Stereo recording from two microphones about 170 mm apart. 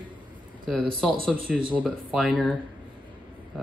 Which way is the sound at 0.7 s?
5° right (ahead or behind).